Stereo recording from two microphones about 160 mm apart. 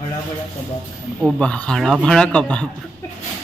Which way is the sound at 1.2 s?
5° left (ahead or behind).